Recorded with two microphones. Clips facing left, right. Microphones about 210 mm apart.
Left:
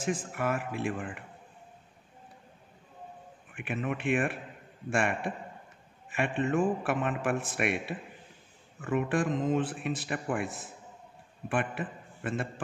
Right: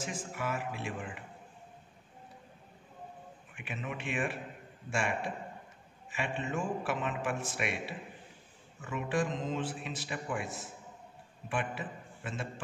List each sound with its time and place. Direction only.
0.0 s speech: 55° left (ahead or behind)
3.5 s a man's voice: 55° left (ahead or behind)